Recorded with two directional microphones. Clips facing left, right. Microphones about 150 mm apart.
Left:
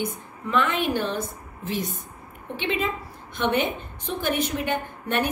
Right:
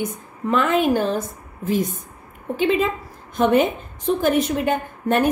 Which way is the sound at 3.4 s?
40° right (ahead or behind).